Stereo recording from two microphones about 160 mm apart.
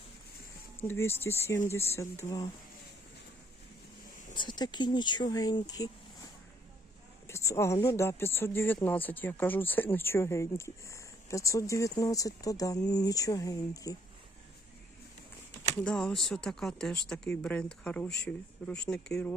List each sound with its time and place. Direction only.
0.8 s speech: 15° left (ahead or behind)
4.4 s speech: 25° left (ahead or behind)
7.3 s a sound: 15° left (ahead or behind)
7.9 s speech: 15° left (ahead or behind)
15.8 s speech: 5° left (ahead or behind)